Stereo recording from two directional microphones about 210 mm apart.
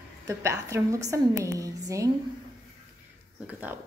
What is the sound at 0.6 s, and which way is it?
A woman's voice, 15° right (ahead or behind).